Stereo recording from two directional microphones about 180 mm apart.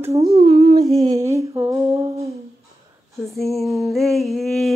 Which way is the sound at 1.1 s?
15° right (ahead or behind).